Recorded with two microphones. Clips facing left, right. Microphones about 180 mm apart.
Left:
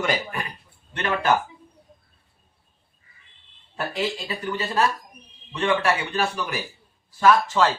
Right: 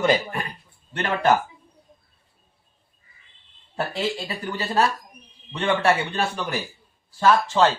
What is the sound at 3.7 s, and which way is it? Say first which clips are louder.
Speech: right 1 dB; 30° right (ahead or behind).